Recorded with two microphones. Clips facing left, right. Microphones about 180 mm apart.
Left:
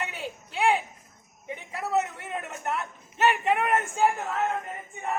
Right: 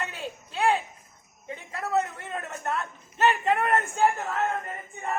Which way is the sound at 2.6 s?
10° left (ahead or behind).